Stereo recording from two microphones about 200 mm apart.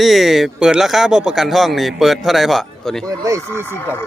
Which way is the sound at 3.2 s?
15° right (ahead or behind).